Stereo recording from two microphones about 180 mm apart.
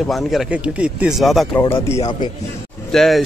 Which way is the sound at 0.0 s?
Centre (ahead or behind).